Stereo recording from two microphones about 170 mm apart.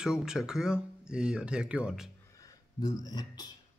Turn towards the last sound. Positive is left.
turn(degrees=25)  # may be behind; listen again after turning